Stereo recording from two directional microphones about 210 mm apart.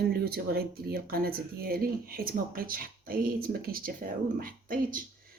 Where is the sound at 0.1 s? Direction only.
45° right (ahead or behind).